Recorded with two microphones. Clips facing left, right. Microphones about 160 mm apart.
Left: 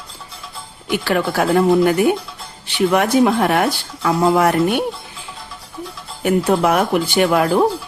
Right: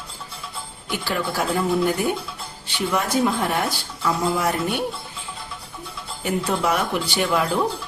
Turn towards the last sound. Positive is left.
turn(degrees=60)  # may be behind; listen again after turning